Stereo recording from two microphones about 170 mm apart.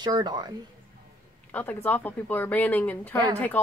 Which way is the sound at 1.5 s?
10° left (ahead or behind).